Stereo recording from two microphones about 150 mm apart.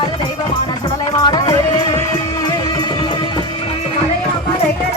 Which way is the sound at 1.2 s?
25° left (ahead or behind).